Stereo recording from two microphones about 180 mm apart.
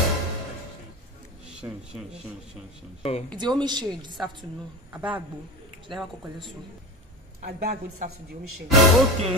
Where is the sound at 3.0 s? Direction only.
35° left (ahead or behind).